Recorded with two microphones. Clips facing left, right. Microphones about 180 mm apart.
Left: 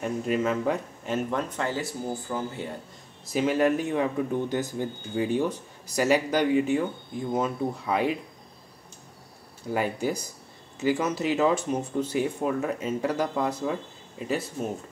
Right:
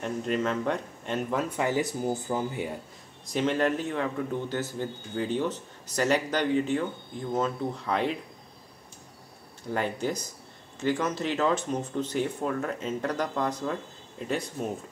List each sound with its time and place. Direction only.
0.0 s speech: 5° left (ahead or behind)
1.5 s speech: 15° right (ahead or behind)
3.3 s speech: 5° left (ahead or behind)
9.7 s speech: 10° left (ahead or behind)